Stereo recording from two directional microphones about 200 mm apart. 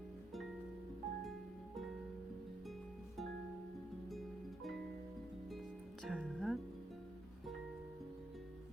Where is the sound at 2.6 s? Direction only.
Centre (ahead or behind).